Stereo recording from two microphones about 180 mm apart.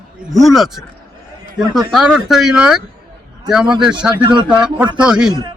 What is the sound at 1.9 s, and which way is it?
Speech, centre (ahead or behind).